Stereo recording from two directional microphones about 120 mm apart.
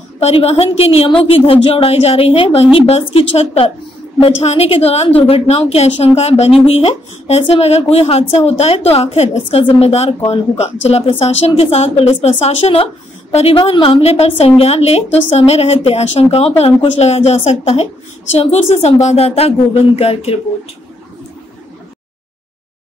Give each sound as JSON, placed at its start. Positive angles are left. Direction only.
{"t": 0.2, "sound": "a woman's voice", "side_deg": 55}